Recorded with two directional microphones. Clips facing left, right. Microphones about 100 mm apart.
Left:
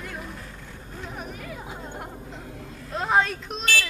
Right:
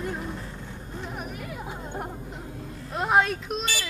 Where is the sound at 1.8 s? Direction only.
15° right (ahead or behind).